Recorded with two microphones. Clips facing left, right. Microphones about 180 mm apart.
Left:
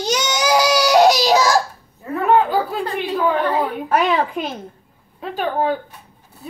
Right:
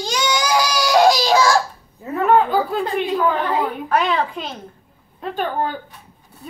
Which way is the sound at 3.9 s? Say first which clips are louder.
Left 2 dB; 25° left (ahead or behind).